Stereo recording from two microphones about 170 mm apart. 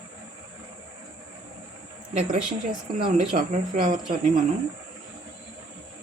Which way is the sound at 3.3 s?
45° right (ahead or behind).